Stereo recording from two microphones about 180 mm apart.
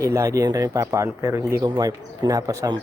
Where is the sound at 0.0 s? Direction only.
15° right (ahead or behind).